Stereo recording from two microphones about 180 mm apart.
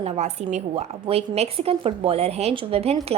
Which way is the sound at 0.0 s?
40° right (ahead or behind).